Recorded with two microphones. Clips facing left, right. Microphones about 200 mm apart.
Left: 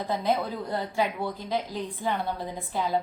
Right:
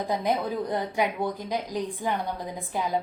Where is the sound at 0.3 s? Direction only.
15° right (ahead or behind).